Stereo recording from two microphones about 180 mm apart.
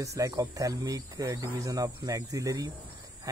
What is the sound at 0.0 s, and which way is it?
Speech, 20° right (ahead or behind).